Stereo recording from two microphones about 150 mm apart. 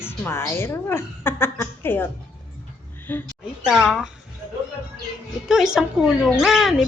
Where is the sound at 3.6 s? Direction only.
5° right (ahead or behind).